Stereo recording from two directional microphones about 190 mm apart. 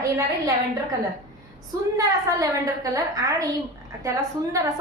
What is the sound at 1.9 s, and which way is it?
A woman's voice, 20° right (ahead or behind).